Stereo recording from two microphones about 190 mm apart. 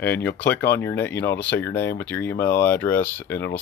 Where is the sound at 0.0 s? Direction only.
60° left (ahead or behind).